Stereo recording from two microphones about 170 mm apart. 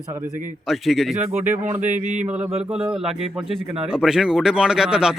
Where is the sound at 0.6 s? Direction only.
Centre (ahead or behind).